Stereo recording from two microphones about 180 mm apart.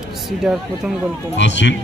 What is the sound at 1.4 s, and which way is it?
Speech, 80° left.